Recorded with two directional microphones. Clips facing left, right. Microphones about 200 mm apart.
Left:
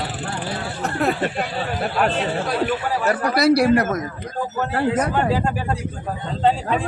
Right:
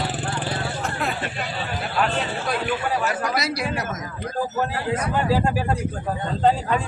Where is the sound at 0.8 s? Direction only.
40° left (ahead or behind).